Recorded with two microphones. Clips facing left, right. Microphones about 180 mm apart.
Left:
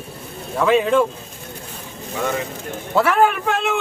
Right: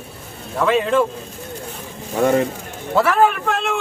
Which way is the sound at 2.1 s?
45° right (ahead or behind).